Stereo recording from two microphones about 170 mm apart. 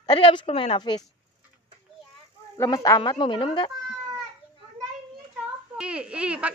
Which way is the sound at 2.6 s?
20° left (ahead or behind).